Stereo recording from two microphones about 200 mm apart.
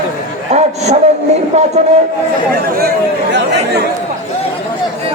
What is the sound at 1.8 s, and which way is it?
Speech, 30° right (ahead or behind).